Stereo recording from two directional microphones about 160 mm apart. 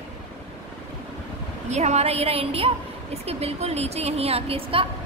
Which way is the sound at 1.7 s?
45° right (ahead or behind).